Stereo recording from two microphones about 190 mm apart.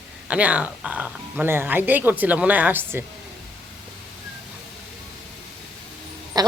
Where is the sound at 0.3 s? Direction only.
5° right (ahead or behind).